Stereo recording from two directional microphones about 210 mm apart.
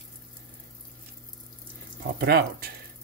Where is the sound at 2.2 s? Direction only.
45° right (ahead or behind).